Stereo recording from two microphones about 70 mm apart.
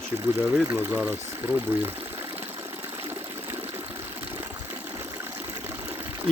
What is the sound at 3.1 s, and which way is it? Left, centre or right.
Water, right.